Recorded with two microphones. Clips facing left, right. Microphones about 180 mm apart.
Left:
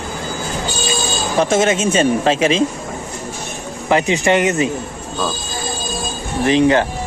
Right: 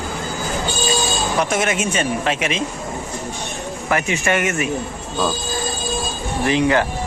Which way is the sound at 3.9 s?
20° left (ahead or behind).